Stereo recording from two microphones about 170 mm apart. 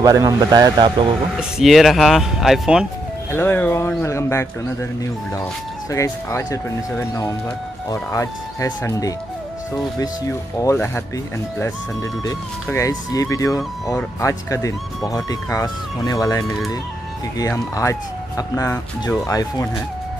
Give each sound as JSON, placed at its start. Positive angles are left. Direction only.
{"t": 0.0, "sound": "speech", "side_deg": -20}
{"t": 1.6, "sound": "speech", "side_deg": 0}
{"t": 3.3, "sound": "speech", "side_deg": 15}
{"t": 5.9, "sound": "speech", "side_deg": 20}
{"t": 12.7, "sound": "speech", "side_deg": 20}